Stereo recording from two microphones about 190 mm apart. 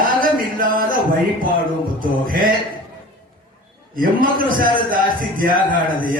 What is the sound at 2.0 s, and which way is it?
Music, 45° right (ahead or behind).